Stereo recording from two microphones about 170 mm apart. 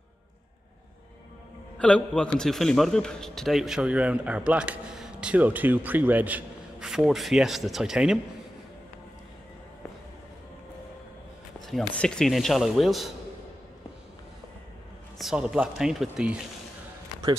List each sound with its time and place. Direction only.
1.8 s a man's voice: 5° left (ahead or behind)
11.9 s a man's voice: 5° left (ahead or behind)
15.1 s a man's voice: 5° right (ahead or behind)